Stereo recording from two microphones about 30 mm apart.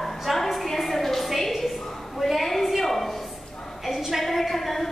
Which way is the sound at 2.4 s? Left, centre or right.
Centre.